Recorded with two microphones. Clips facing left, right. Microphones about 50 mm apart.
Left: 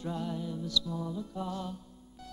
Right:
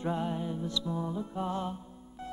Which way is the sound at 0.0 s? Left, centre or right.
Right.